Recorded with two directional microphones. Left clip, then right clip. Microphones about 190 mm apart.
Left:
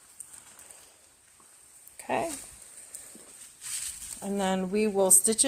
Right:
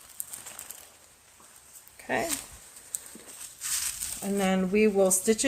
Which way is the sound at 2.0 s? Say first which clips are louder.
Even; 30° left (ahead or behind).